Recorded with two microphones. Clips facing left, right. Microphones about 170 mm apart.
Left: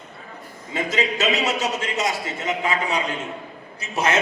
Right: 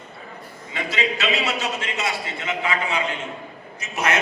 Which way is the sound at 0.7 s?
40° left (ahead or behind).